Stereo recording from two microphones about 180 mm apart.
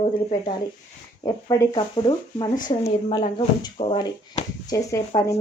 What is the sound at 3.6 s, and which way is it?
Speech, 25° left (ahead or behind).